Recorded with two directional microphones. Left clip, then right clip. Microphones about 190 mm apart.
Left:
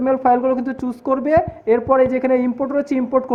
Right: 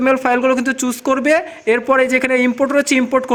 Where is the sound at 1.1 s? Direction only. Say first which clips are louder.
Even; 65° right (ahead or behind).